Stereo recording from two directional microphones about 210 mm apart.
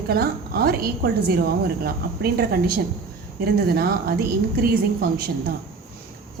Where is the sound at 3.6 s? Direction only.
45° right (ahead or behind).